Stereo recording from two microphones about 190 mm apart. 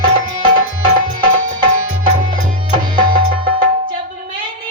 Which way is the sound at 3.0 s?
45° right (ahead or behind).